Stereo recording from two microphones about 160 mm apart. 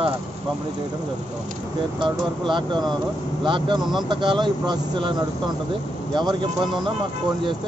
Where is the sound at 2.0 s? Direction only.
30° right (ahead or behind).